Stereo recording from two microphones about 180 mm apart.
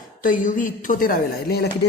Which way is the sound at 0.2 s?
45° left (ahead or behind).